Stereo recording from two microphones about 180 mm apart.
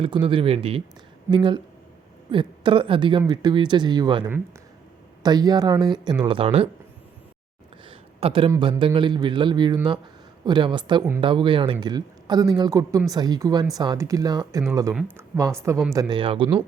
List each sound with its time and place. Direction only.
0.0 s speech: 30° right (ahead or behind)
7.9 s a sound: 30° right (ahead or behind)
8.8 s speech: 30° right (ahead or behind)